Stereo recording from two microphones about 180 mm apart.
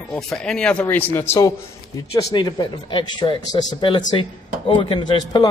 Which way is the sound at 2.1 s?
25° left (ahead or behind).